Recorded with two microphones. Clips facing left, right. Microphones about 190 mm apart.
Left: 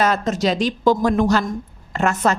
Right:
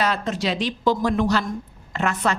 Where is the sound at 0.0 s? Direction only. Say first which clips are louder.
Left 5 dB; 45° left (ahead or behind).